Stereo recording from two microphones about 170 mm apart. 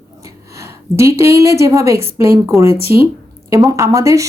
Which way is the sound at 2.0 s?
15° right (ahead or behind).